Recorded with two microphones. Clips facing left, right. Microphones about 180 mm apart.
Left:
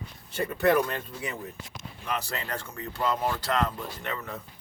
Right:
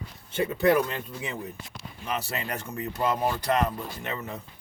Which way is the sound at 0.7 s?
10° right (ahead or behind).